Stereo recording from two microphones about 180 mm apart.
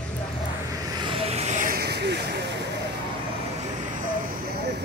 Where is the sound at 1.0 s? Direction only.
30° right (ahead or behind); by 2.2 s 65° right (ahead or behind).